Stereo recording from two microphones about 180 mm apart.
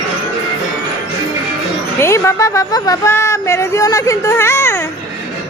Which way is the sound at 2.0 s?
15° left (ahead or behind).